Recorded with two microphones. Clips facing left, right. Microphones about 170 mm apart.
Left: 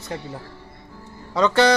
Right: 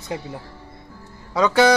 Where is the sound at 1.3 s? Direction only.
5° right (ahead or behind).